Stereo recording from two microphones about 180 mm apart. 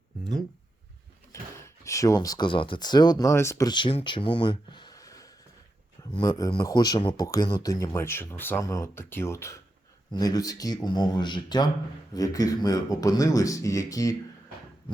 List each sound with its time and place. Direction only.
1.3 s speech: 15° left (ahead or behind)